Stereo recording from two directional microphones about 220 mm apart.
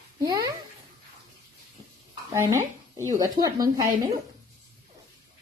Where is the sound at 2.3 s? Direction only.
10° right (ahead or behind).